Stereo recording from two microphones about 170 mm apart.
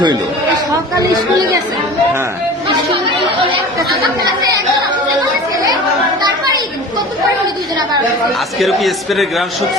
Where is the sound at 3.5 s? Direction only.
25° right (ahead or behind).